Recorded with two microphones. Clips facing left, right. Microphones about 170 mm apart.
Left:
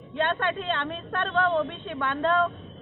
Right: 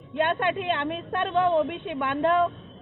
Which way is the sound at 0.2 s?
15° right (ahead or behind).